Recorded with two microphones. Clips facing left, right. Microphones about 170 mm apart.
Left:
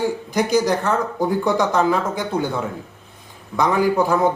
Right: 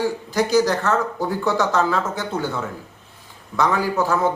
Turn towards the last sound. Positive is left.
turn(degrees=15)  # may be behind; listen again after turning